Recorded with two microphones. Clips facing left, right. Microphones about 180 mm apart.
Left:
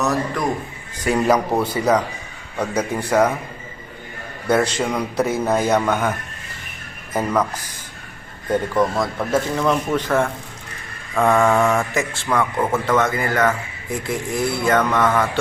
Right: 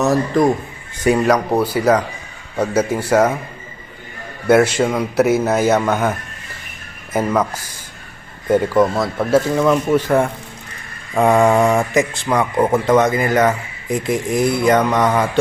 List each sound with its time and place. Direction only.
0.0 s a man's voice: 25° right (ahead or behind)
1.2 s speech: centre (ahead or behind)
4.4 s speech: 10° right (ahead or behind)
8.7 s speech: 5° right (ahead or behind)